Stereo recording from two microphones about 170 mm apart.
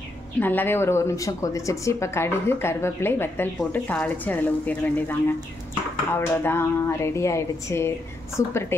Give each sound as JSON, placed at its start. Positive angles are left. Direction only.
{"t": 0.4, "sound": "a woman's voice", "side_deg": 10}
{"t": 6.1, "sound": "a woman's voice", "side_deg": 15}